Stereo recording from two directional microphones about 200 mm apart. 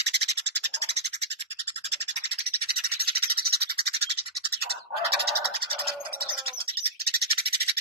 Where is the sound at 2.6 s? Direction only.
50° right (ahead or behind).